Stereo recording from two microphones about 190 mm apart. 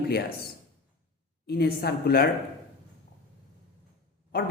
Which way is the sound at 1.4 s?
55° left (ahead or behind).